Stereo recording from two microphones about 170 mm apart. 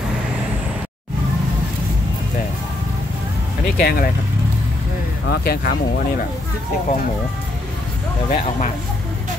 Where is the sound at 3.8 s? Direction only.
65° left (ahead or behind).